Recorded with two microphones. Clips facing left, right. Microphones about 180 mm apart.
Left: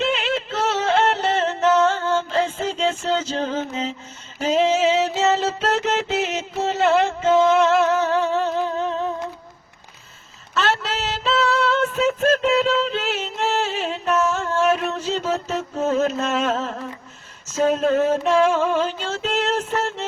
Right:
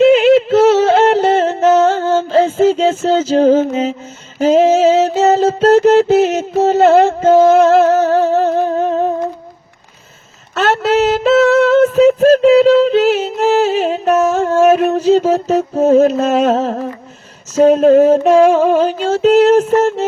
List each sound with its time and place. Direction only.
0.5 s a sound: 40° right (ahead or behind)
4.4 s music: 45° right (ahead or behind)
10.5 s female singing: 50° right (ahead or behind)
17.5 s speech: 40° right (ahead or behind)
18.3 s female singing: 40° right (ahead or behind)